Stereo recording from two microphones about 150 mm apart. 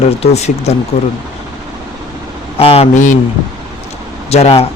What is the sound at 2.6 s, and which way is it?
Speech, 40° left (ahead or behind).